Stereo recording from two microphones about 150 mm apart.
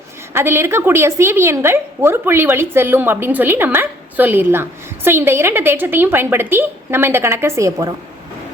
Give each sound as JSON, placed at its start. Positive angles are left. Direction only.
{"t": 0.3, "sound": "a woman's voice", "side_deg": -15}